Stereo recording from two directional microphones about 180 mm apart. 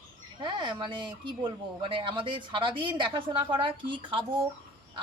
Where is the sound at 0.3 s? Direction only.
25° right (ahead or behind).